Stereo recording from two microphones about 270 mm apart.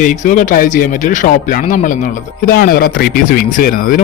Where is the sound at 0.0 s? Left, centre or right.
Left.